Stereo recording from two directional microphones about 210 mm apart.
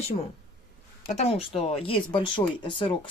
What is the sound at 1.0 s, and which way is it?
A woman's voice, 30° left (ahead or behind).